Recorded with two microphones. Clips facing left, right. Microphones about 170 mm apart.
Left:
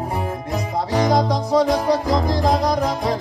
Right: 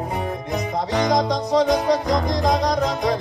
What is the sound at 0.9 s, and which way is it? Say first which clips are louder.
Music: left 2 dB; 30° left (ahead or behind).